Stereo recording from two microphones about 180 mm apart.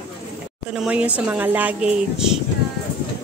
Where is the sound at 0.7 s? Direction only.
5° right (ahead or behind).